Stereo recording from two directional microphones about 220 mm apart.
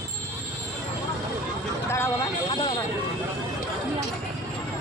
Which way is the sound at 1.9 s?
15° left (ahead or behind).